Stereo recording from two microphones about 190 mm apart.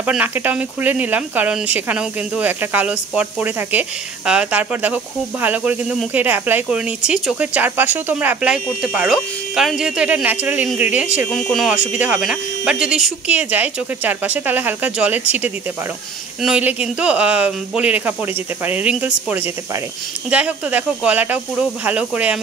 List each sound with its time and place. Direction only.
0.0 s speech: 5° right (ahead or behind)
11.2 s speech: 5° left (ahead or behind)